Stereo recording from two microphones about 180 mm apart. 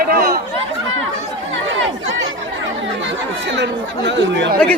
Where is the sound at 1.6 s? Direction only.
90° right.